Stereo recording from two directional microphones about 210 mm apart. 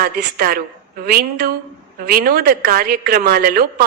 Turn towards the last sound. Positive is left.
turn(degrees=-45)  # may be behind; listen again after turning